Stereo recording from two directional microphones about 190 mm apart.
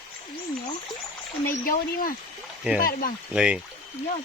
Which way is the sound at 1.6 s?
50° left (ahead or behind).